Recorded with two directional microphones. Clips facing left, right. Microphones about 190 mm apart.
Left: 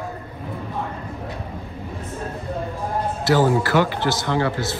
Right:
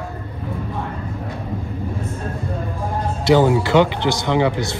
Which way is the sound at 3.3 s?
20° right (ahead or behind).